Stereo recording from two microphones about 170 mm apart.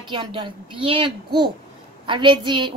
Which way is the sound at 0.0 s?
30° right (ahead or behind).